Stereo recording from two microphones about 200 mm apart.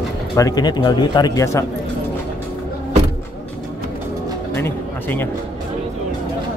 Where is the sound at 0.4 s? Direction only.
20° left (ahead or behind).